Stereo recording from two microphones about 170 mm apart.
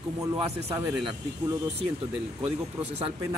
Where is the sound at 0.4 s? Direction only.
25° right (ahead or behind).